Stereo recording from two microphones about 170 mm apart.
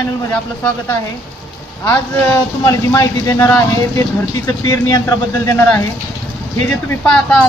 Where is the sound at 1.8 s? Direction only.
15° left (ahead or behind).